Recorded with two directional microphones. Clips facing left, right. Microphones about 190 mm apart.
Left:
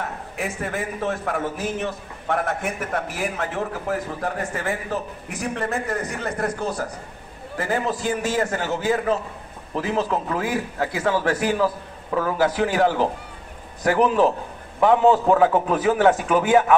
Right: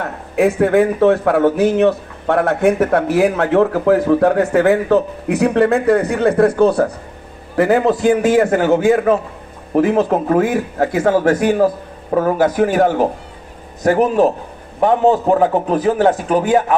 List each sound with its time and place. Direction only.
0.0 s a man's voice: 65° right (ahead or behind); by 16.7 s 35° right (ahead or behind)